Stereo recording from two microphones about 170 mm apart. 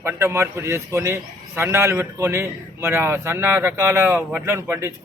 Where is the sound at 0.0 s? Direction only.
15° right (ahead or behind).